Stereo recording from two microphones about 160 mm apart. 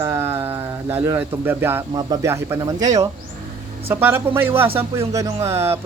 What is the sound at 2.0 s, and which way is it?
Speech, 20° right (ahead or behind).